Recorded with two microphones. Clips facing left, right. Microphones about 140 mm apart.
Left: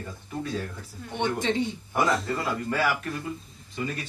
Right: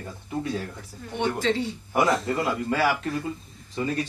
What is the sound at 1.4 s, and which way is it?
Speech, 20° left (ahead or behind).